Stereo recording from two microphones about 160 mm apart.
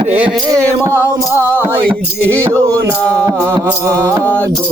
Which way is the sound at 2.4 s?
20° right (ahead or behind).